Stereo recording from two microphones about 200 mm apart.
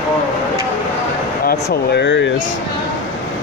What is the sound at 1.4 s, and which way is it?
Speech, 50° left (ahead or behind).